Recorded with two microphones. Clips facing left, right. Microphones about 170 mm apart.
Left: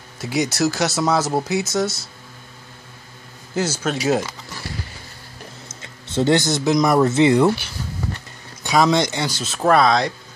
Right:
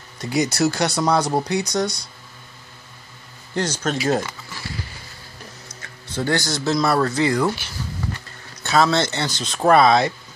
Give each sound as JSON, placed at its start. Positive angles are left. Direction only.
{"t": 0.2, "sound": "speech", "side_deg": 0}
{"t": 3.5, "sound": "speech", "side_deg": 5}
{"t": 5.7, "sound": "speech", "side_deg": 25}
{"t": 8.6, "sound": "speech", "side_deg": 15}